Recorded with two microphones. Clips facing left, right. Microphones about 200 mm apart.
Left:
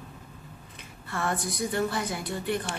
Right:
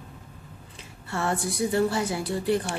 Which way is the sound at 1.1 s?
25° right (ahead or behind).